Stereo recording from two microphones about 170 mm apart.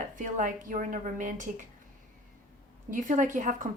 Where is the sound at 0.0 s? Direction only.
50° right (ahead or behind).